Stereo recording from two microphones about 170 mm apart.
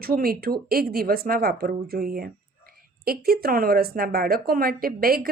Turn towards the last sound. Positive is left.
turn(degrees=-60)  # may be behind; listen again after turning